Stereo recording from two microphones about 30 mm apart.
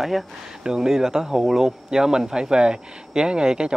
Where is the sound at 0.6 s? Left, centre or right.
Centre.